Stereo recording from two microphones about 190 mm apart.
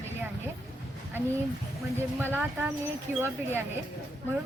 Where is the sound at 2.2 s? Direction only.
10° right (ahead or behind).